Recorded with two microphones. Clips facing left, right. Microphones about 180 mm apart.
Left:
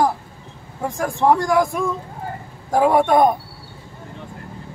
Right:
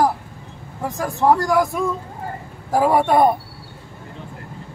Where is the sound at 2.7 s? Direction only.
5° right (ahead or behind).